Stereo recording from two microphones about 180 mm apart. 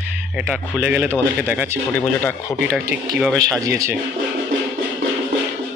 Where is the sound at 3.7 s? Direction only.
15° right (ahead or behind).